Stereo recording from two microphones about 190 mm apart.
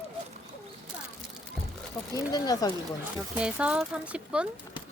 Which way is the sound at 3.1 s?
5° right (ahead or behind).